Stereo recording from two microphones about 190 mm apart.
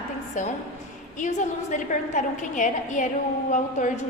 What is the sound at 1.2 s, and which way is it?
A woman's voice, 40° left (ahead or behind).